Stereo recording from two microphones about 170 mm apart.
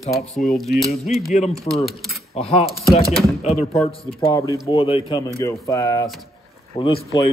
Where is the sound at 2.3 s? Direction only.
35° left (ahead or behind).